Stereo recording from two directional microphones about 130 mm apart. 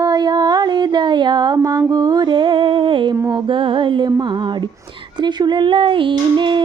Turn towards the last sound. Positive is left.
turn(degrees=-40)  # may be behind; listen again after turning